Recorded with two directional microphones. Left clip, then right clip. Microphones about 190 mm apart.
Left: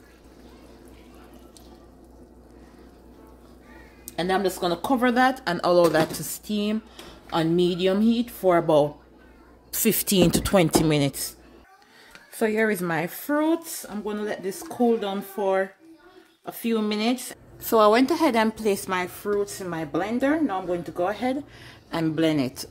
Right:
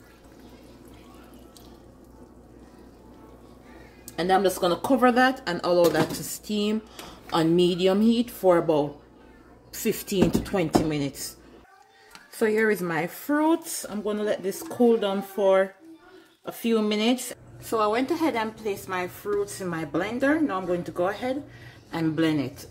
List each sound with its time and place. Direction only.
4.4 s speech: 10° left (ahead or behind)
9.7 s speech: 55° left (ahead or behind)
12.4 s speech: 20° left (ahead or behind)
13.7 s speech: 5° left (ahead or behind)
17.6 s a woman's voice: 50° left (ahead or behind); by 22.5 s 35° left (ahead or behind)